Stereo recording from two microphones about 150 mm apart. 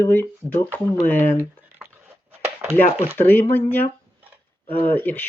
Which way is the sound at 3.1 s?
15° left (ahead or behind).